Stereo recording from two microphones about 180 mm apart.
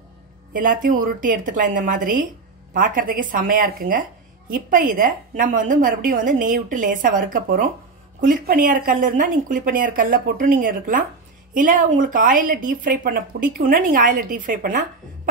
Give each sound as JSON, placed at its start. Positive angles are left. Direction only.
{"t": 0.5, "sound": "speech", "side_deg": -50}